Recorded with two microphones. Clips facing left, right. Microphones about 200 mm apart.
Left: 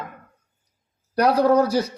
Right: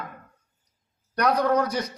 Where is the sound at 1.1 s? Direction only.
30° left (ahead or behind).